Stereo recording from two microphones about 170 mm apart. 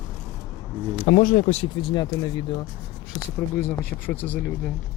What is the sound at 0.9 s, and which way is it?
Speech, 50° left (ahead or behind).